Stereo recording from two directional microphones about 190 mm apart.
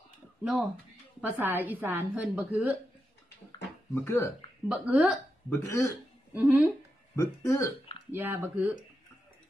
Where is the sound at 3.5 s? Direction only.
15° left (ahead or behind).